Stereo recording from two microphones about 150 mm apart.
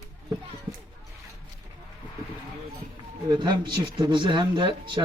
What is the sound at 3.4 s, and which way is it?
Speech, 30° right (ahead or behind).